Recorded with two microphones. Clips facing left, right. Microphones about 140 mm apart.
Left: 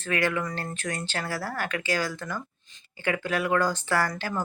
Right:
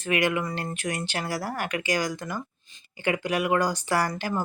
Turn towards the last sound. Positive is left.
turn(degrees=-15)  # may be behind; listen again after turning